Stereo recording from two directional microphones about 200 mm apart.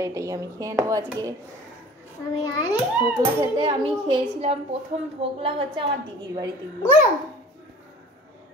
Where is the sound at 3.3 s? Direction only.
25° right (ahead or behind).